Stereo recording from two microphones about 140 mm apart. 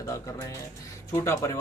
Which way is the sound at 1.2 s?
20° left (ahead or behind).